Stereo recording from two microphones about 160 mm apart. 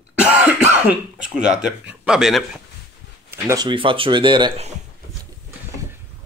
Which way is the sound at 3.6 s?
30° right (ahead or behind).